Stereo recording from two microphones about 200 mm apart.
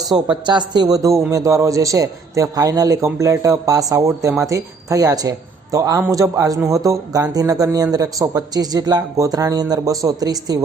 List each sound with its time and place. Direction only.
0.4 s a man's voice: 20° right (ahead or behind)